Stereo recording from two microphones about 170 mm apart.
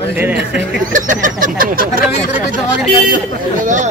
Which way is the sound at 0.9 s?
50° right (ahead or behind).